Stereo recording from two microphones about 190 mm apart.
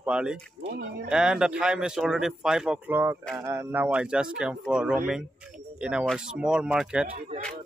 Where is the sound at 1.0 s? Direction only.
5° right (ahead or behind).